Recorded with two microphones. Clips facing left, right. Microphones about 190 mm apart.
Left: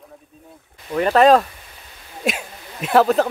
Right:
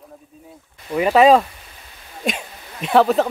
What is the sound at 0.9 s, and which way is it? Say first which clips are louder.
Speech: right 1 dB; 5° right (ahead or behind).